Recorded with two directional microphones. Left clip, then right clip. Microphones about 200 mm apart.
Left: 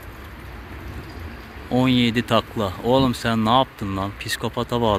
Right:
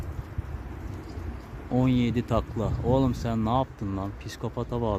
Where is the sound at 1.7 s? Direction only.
Centre (ahead or behind).